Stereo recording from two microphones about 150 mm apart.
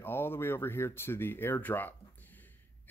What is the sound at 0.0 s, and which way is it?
Speech, 15° left (ahead or behind).